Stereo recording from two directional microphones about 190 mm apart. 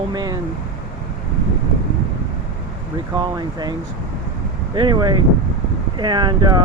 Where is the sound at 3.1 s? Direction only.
20° right (ahead or behind).